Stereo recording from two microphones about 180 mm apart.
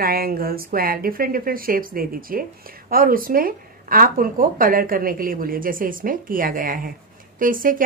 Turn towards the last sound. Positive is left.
turn(degrees=-50)  # may be behind; listen again after turning